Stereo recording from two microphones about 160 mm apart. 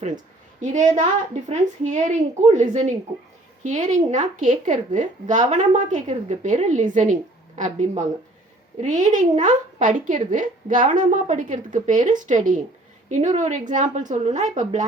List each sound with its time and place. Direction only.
0.6 s a woman's voice: 50° right (ahead or behind)